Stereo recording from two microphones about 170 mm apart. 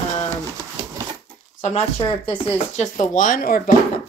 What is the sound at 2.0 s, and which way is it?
Speech, 30° left (ahead or behind).